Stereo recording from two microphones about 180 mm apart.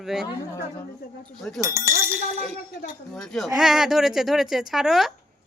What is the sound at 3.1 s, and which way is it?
Speech, centre (ahead or behind).